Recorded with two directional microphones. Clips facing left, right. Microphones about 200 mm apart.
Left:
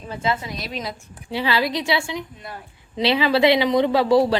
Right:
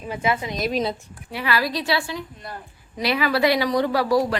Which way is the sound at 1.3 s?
25° left (ahead or behind).